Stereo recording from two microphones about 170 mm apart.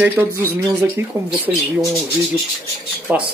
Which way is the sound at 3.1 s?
10° right (ahead or behind).